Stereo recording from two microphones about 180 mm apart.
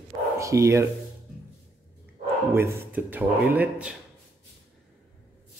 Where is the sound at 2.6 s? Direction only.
10° right (ahead or behind).